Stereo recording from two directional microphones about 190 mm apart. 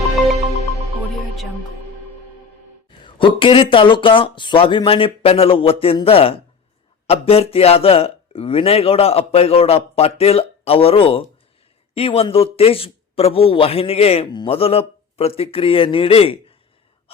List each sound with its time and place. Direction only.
0.0 s music: centre (ahead or behind)
3.2 s a man's voice: 25° left (ahead or behind)